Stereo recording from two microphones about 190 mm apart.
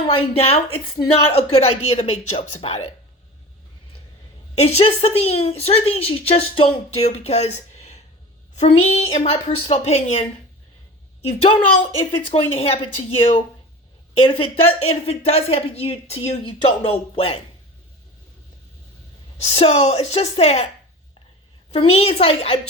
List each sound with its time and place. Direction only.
0.1 s a woman's voice: 30° left (ahead or behind)
4.5 s a woman's voice: 35° left (ahead or behind)
11.9 s a woman's voice: 30° left (ahead or behind)
19.4 s a woman's voice: 30° left (ahead or behind)
21.7 s a woman's voice: 30° left (ahead or behind)